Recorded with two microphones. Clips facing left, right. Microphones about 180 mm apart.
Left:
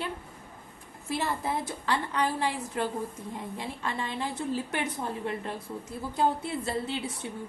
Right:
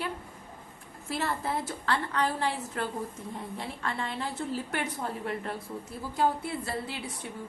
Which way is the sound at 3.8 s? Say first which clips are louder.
Left 1 dB; 15° left (ahead or behind).